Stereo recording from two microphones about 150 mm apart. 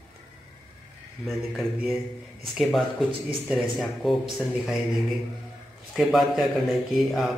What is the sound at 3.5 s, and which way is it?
Speech, centre (ahead or behind).